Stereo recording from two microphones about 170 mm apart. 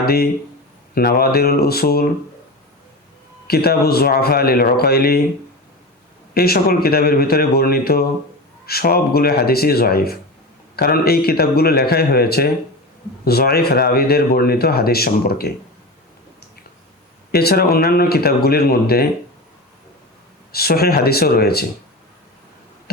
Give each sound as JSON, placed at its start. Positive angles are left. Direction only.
{"t": 0.0, "sound": "speech", "side_deg": 65}
{"t": 3.4, "sound": "speech", "side_deg": 65}
{"t": 6.3, "sound": "speech", "side_deg": 65}
{"t": 17.3, "sound": "speech", "side_deg": 65}
{"t": 20.5, "sound": "speech", "side_deg": 65}